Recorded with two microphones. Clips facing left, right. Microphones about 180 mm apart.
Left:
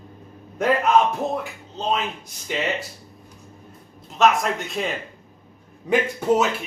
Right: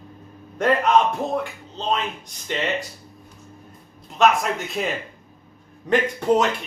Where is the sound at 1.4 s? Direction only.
5° left (ahead or behind).